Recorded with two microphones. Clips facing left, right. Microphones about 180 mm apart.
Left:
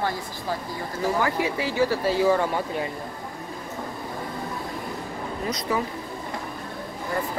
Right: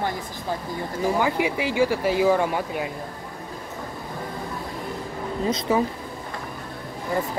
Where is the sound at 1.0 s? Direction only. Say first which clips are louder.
Right 2 dB; 15° right (ahead or behind).